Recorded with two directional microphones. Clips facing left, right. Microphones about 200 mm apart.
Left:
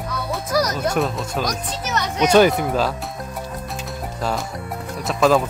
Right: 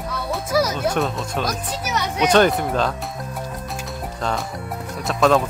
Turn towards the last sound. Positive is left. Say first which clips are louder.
# even
turn(degrees=0)  # may be behind; listen again after turning